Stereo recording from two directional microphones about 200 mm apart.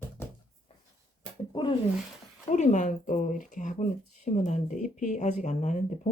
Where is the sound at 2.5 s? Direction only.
35° left (ahead or behind).